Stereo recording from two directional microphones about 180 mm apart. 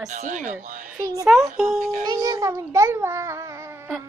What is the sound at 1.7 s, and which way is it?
Speech, 45° right (ahead or behind).